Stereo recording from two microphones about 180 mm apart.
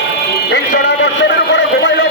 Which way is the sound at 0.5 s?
70° left (ahead or behind).